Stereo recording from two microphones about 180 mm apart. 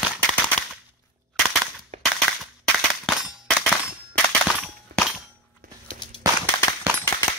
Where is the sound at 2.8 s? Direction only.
Centre (ahead or behind).